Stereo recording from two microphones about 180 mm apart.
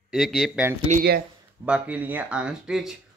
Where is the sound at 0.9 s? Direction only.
40° right (ahead or behind).